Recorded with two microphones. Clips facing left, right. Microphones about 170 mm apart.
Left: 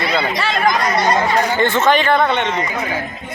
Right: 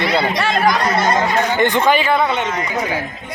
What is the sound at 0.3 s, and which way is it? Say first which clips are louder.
Speech: right 2 dB; 50° right (ahead or behind).